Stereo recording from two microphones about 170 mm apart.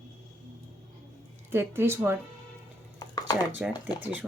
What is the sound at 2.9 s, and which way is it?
Chopping, 20° left (ahead or behind).